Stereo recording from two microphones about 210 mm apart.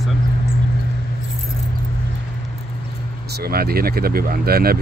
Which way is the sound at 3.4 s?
45° right (ahead or behind).